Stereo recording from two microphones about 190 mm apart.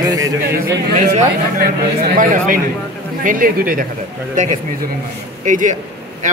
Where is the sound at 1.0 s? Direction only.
40° right (ahead or behind).